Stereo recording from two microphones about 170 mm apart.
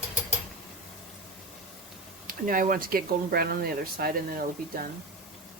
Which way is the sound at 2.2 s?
55° right (ahead or behind).